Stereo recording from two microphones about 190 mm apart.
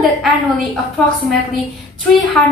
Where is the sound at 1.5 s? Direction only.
Centre (ahead or behind).